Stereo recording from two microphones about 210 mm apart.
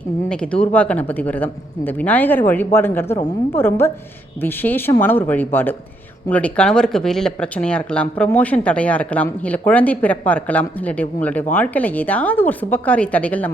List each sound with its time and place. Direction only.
0.3 s speech: 5° left (ahead or behind)